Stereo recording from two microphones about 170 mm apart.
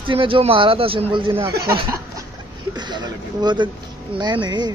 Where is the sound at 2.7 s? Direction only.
25° right (ahead or behind).